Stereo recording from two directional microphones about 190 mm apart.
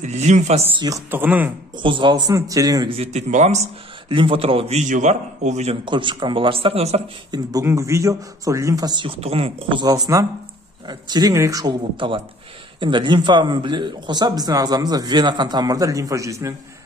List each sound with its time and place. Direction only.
0.0 s speech: 40° right (ahead or behind)
0.8 s speech: 15° right (ahead or behind)
1.8 s a man's voice: 25° right (ahead or behind)
3.0 s speech: 35° right (ahead or behind)
5.9 s a man's voice: 25° right (ahead or behind)
7.2 s a man's voice: 20° right (ahead or behind)